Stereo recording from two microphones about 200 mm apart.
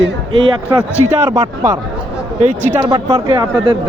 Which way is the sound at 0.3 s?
25° right (ahead or behind).